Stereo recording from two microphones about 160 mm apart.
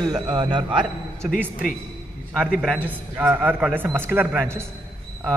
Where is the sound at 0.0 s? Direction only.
25° right (ahead or behind).